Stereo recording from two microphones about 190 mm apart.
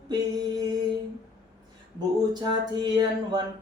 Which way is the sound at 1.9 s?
20° right (ahead or behind).